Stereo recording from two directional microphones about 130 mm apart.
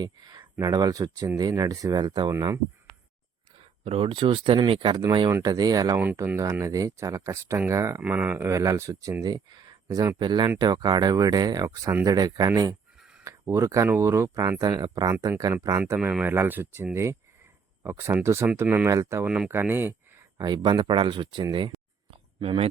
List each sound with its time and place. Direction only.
0.0 s speech: 30° right (ahead or behind)
3.8 s speech: 45° right (ahead or behind); by 8.0 s 20° right (ahead or behind)
8.0 s speech: 10° right (ahead or behind); by 15.5 s 30° right (ahead or behind)
16.0 s speech: 5° right (ahead or behind)
20.4 s speech: 35° right (ahead or behind)
22.1 s a sound: 45° right (ahead or behind)